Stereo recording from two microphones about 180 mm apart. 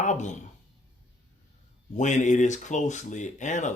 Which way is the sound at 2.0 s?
40° left (ahead or behind).